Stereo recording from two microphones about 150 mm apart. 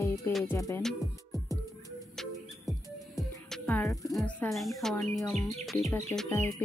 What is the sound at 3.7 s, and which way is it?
Music, 15° left (ahead or behind).